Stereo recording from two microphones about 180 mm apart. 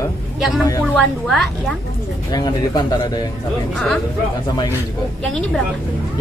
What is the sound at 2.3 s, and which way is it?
Speech, 20° left (ahead or behind).